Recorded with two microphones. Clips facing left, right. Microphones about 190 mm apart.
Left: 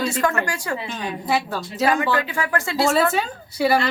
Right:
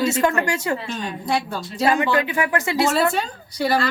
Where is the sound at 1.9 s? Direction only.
20° right (ahead or behind).